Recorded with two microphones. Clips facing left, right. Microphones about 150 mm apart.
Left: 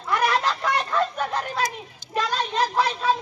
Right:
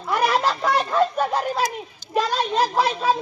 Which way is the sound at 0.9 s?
35° right (ahead or behind).